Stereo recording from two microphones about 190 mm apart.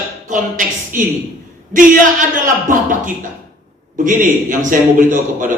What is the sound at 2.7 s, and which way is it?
A man's voice, 45° right (ahead or behind).